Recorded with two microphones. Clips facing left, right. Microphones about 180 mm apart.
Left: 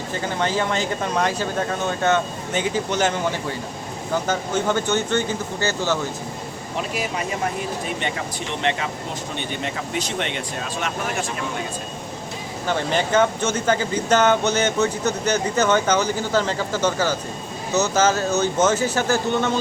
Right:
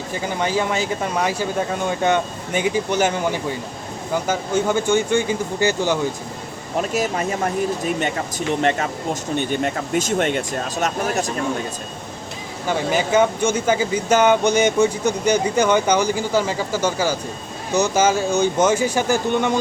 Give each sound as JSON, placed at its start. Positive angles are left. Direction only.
{"t": 0.1, "sound": "speech", "side_deg": -10}
{"t": 6.7, "sound": "speech", "side_deg": -45}
{"t": 9.4, "sound": "speech", "side_deg": -45}
{"t": 12.6, "sound": "speech", "side_deg": -10}